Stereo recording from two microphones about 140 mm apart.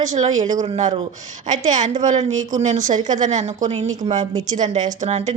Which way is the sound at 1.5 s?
60° right (ahead or behind).